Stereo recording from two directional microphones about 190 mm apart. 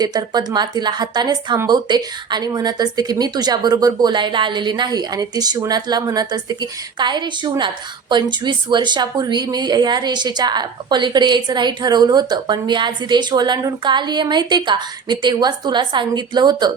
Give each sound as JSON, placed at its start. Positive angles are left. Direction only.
{"t": 0.0, "sound": "speech", "side_deg": -20}